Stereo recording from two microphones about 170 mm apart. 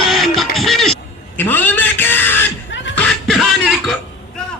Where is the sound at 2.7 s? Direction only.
90° left.